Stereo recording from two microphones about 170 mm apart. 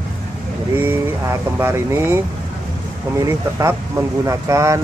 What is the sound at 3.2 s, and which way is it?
Speech, 15° right (ahead or behind).